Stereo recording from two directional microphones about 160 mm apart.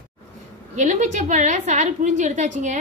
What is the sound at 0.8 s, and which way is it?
A woman's voice, 50° right (ahead or behind).